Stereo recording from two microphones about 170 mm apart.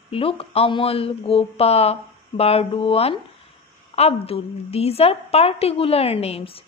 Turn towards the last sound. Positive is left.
turn(degrees=35)  # may be behind; listen again after turning